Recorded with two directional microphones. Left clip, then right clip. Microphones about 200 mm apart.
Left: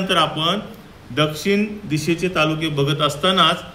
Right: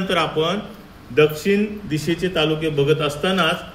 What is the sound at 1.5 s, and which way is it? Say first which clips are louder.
A man's voice: even; 30° left (ahead or behind).